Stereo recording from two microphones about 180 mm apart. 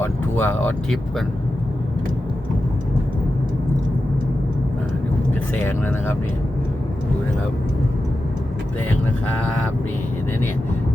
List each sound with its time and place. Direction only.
0.0 s speech: 10° left (ahead or behind)
5.5 s speech: 10° left (ahead or behind)